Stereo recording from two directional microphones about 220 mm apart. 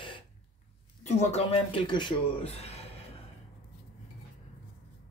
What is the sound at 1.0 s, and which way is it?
Speech, 30° left (ahead or behind).